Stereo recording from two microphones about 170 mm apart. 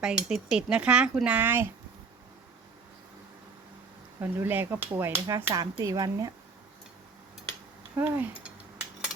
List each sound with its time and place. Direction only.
0.0 s speech: 5° right (ahead or behind)
4.2 s speech: 10° right (ahead or behind)
7.9 s cutlery: 10° right (ahead or behind)